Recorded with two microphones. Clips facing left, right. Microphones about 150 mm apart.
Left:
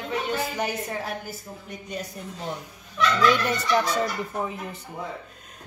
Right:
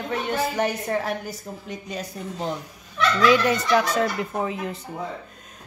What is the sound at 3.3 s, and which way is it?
Speech, 90° right.